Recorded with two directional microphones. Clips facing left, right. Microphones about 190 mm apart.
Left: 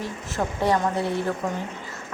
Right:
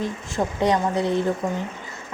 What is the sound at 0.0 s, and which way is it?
A woman's voice, 20° right (ahead or behind).